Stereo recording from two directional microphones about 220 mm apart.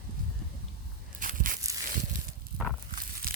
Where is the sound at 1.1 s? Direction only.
40° right (ahead or behind).